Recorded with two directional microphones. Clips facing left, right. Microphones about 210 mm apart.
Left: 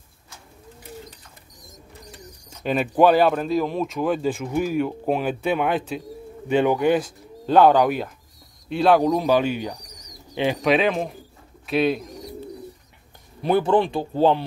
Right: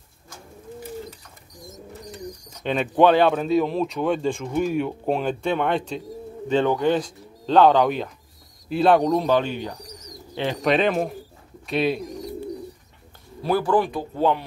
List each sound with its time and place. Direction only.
2.0 s speech: 5° left (ahead or behind)
10.6 s speech: centre (ahead or behind)
13.4 s a man's voice: 20° left (ahead or behind)